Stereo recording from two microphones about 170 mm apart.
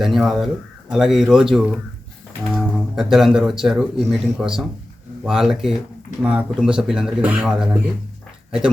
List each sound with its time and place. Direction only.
0.0 s speech: centre (ahead or behind)